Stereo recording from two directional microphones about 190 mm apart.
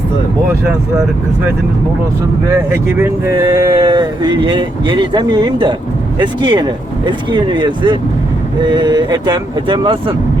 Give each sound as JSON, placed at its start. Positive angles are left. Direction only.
{"t": 3.0, "sound": "speech", "side_deg": -15}